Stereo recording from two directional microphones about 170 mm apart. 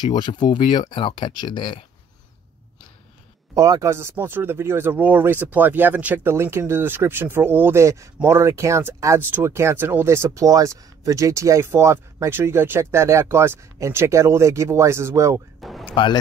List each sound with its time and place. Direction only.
0.2 s speech: 25° left (ahead or behind)
3.5 s speech: 20° right (ahead or behind)
15.8 s a sound: 30° left (ahead or behind)